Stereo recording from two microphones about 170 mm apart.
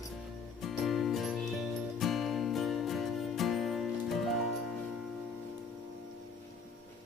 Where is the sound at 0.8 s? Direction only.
Centre (ahead or behind).